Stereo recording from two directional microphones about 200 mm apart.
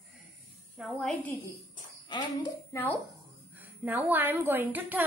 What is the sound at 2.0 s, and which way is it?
Speech, 20° left (ahead or behind).